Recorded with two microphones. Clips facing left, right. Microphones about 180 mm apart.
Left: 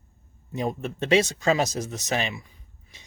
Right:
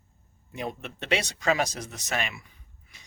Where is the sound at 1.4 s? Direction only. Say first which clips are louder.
Left 3 dB; 25° left (ahead or behind).